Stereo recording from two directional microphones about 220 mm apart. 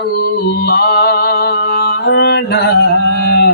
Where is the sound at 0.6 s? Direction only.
50° left (ahead or behind).